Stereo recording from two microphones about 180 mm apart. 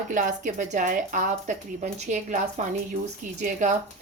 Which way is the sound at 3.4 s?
45° right (ahead or behind).